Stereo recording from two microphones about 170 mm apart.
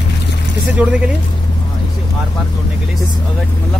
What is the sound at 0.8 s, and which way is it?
Speech, 10° right (ahead or behind).